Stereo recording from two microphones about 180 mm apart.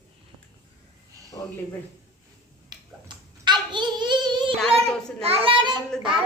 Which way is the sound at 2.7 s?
25° right (ahead or behind).